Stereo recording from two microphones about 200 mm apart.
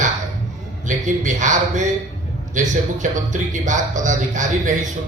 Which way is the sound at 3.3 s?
40° right (ahead or behind).